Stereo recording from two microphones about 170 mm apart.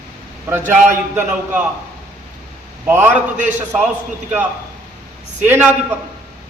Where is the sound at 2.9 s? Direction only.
15° right (ahead or behind).